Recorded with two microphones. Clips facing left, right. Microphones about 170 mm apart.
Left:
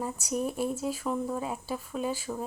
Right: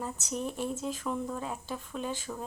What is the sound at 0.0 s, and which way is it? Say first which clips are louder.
Speech: left 4 dB; 10° left (ahead or behind).